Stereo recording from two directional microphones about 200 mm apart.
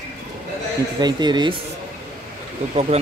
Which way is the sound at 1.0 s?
20° right (ahead or behind).